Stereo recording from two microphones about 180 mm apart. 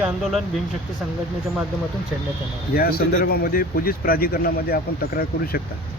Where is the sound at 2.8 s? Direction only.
55° left (ahead or behind).